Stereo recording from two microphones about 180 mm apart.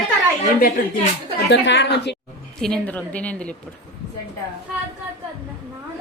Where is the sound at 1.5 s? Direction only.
80° left.